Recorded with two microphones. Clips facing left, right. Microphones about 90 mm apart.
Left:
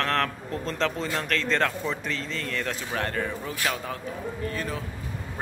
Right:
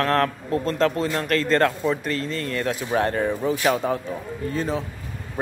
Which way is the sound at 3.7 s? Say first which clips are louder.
Right 10 dB; 35° right (ahead or behind).